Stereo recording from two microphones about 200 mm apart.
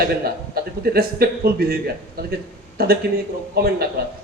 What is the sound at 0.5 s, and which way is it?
Speech, 50° right (ahead or behind).